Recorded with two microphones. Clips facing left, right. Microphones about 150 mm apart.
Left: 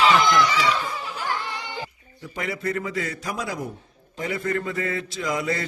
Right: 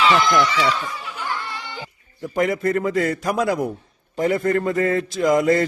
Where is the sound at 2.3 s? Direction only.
45° right (ahead or behind).